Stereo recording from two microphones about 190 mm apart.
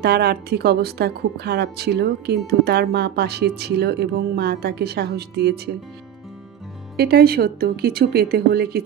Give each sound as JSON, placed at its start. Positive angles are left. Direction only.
{"t": 0.0, "sound": "speech", "side_deg": -55}
{"t": 7.0, "sound": "speech", "side_deg": -55}